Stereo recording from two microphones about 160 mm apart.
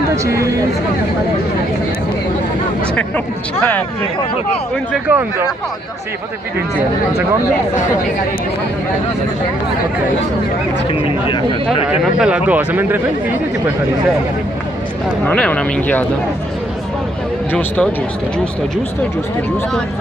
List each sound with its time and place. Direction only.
0.1 s speech: 20° right (ahead or behind)
3.5 s speech: 10° left (ahead or behind)
4.9 s speech: 10° right (ahead or behind)
10.9 s speech: 30° left (ahead or behind)
11.9 s speech: 5° right (ahead or behind)
15.2 s speech: 10° left (ahead or behind)
17.5 s speech: 10° left (ahead or behind)